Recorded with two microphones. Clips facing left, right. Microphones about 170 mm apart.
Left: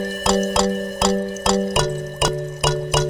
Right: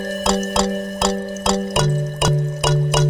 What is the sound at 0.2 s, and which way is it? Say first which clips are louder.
Music: left 1 dB; centre (ahead or behind).